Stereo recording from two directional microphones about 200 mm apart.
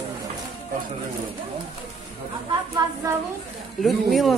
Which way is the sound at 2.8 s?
20° right (ahead or behind).